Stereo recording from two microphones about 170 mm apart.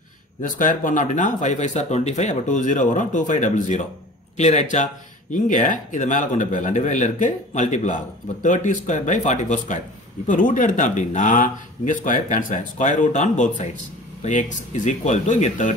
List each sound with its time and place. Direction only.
0.4 s speech: 50° left (ahead or behind)